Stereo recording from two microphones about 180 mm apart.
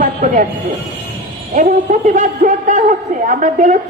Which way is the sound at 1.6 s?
45° right (ahead or behind).